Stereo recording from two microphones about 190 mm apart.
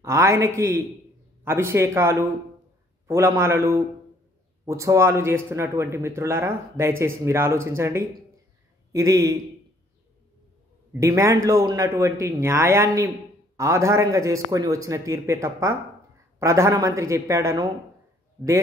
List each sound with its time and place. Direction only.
0.0 s a man's voice: 15° right (ahead or behind)
10.9 s a man's voice: 15° right (ahead or behind)